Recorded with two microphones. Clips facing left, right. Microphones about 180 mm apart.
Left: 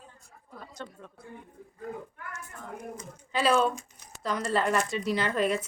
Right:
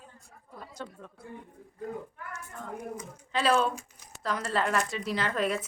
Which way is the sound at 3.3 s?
5° left (ahead or behind).